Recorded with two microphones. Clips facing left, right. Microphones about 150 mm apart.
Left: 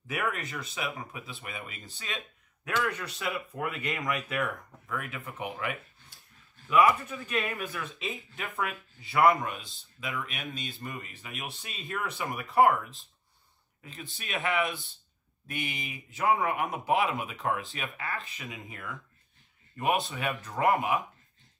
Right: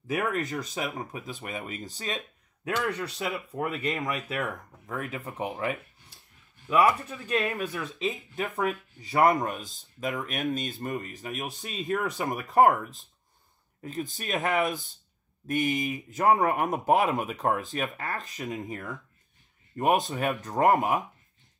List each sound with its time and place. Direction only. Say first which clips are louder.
0.0 s speech: right 5 dB; 40° right (ahead or behind)